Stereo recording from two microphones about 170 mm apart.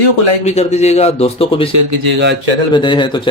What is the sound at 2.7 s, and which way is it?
Speech, 30° left (ahead or behind).